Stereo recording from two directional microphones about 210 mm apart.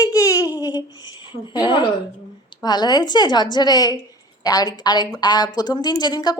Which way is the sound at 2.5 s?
20° left (ahead or behind).